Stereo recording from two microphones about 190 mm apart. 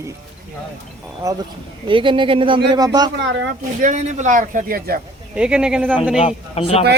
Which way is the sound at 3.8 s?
40° right (ahead or behind).